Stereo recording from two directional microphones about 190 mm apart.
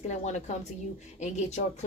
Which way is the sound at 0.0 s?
35° left (ahead or behind).